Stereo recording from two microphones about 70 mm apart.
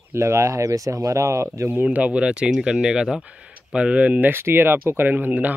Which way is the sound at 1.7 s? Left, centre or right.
Right.